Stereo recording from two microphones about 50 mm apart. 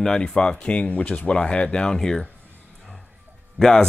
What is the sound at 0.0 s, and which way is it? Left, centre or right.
Speech, centre.